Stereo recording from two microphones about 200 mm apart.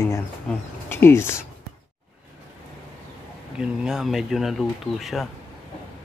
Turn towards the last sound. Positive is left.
turn(degrees=0)  # may be behind; listen again after turning